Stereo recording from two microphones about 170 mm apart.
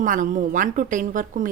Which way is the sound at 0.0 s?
50° right (ahead or behind).